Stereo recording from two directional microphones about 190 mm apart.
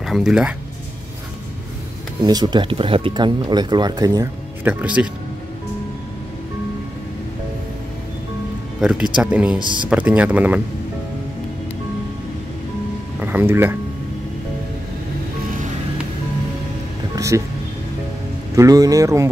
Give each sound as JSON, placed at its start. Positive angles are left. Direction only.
{"t": 0.0, "sound": "speech", "side_deg": 0}
{"t": 2.2, "sound": "speech", "side_deg": -20}
{"t": 4.8, "sound": "speech", "side_deg": -5}
{"t": 9.1, "sound": "speech", "side_deg": -5}
{"t": 9.6, "sound": "speech", "side_deg": -25}
{"t": 9.8, "sound": "speech", "side_deg": -10}
{"t": 13.2, "sound": "speech", "side_deg": -10}
{"t": 17.1, "sound": "music", "side_deg": -15}
{"t": 18.5, "sound": "speech", "side_deg": -15}